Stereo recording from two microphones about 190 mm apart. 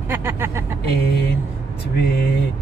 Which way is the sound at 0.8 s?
60° left (ahead or behind).